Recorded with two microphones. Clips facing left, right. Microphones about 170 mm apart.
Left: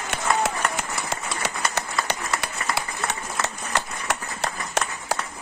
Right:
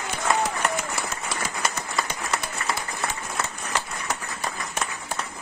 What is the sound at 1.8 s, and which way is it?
Applause, 75° left (ahead or behind).